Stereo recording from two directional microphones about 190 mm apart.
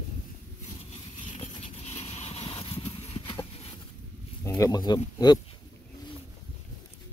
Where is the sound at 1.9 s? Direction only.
30° left (ahead or behind).